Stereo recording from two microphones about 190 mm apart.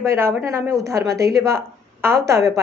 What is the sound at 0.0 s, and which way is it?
A woman's voice, 15° right (ahead or behind).